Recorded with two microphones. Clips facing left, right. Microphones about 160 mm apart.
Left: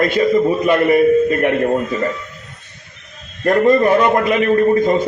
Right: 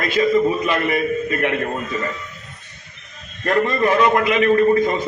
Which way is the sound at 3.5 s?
35° left (ahead or behind).